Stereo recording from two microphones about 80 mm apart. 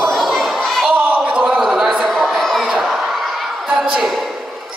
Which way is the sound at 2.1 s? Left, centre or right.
Centre.